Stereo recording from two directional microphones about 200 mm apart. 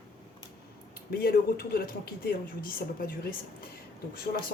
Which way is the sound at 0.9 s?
50° left (ahead or behind).